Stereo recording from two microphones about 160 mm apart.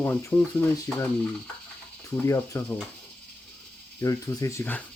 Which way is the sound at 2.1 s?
20° left (ahead or behind).